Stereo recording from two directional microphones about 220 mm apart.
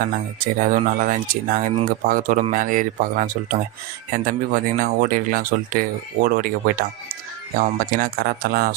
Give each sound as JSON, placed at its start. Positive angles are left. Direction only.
{"t": 0.4, "sound": "speech", "side_deg": -40}